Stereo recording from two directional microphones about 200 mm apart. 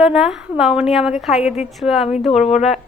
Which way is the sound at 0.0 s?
5° right (ahead or behind).